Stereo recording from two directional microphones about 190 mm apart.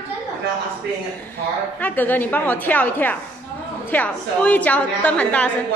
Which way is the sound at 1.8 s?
10° left (ahead or behind).